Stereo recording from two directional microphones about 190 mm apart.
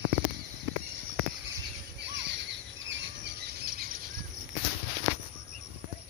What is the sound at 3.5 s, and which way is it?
Insect, 50° right (ahead or behind).